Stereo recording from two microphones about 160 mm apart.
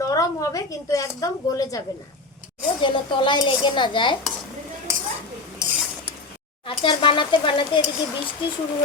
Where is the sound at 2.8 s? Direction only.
30° left (ahead or behind).